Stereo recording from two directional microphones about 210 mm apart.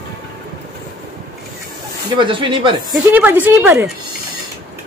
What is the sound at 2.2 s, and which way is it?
Speech, 25° right (ahead or behind).